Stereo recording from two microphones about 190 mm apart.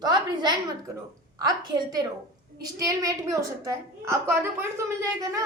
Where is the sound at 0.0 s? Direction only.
20° right (ahead or behind).